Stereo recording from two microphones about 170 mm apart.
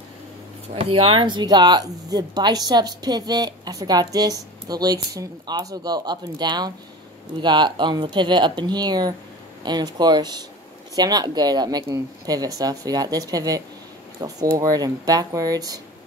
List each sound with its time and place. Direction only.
0.7 s speech: 30° right (ahead or behind)